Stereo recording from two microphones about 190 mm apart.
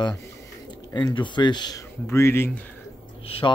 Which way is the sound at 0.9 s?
25° left (ahead or behind).